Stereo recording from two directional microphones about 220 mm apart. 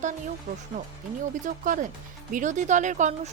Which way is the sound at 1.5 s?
35° right (ahead or behind).